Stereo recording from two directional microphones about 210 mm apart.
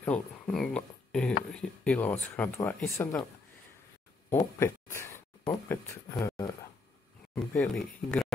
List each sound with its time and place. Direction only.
0.0 s speech: 5° left (ahead or behind)
4.3 s a sound: 10° left (ahead or behind)
5.5 s speech: 15° left (ahead or behind)
7.3 s speech: 5° left (ahead or behind)